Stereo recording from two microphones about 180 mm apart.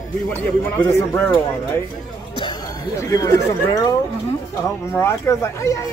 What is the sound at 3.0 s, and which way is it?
Speech, 15° left (ahead or behind).